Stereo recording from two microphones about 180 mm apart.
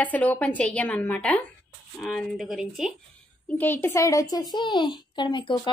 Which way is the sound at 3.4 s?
10° left (ahead or behind).